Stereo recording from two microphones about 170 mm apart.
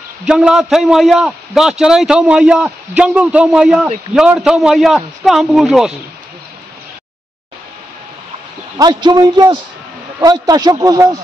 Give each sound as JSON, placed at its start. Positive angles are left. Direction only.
{"t": 0.2, "sound": "a man's voice", "side_deg": -5}
{"t": 8.7, "sound": "a man's voice", "side_deg": -25}